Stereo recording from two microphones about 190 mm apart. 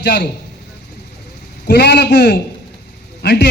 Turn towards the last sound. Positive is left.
turn(degrees=60)  # may be behind; listen again after turning